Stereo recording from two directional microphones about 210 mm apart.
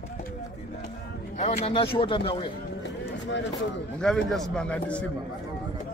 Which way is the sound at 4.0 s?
Centre (ahead or behind).